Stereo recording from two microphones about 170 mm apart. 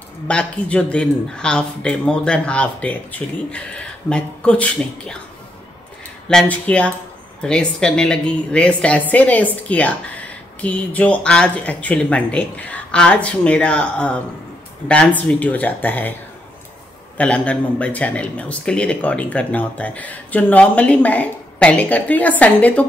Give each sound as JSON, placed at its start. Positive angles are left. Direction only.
{"t": 0.3, "sound": "speech", "side_deg": 5}
{"t": 6.2, "sound": "speech", "side_deg": 5}
{"t": 17.2, "sound": "speech", "side_deg": 10}